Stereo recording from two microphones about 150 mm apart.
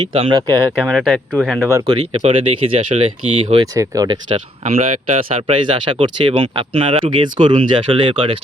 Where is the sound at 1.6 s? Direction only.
20° right (ahead or behind); by 3.7 s 40° right (ahead or behind).